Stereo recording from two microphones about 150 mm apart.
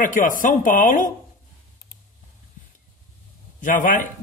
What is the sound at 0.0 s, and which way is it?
A man's voice, 60° left (ahead or behind).